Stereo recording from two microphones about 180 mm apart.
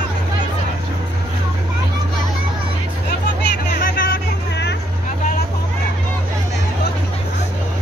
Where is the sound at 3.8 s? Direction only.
50° left (ahead or behind); by 4.8 s 70° left (ahead or behind).